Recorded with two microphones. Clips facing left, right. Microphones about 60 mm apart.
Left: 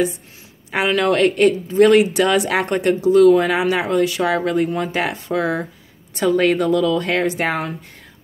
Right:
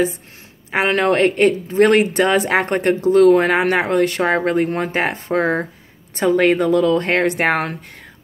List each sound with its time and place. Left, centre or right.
0.7 s speech: right